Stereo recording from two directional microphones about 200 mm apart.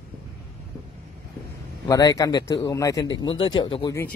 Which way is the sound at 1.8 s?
20° left (ahead or behind).